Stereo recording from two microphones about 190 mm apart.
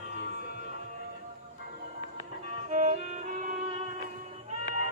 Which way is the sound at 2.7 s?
40° right (ahead or behind).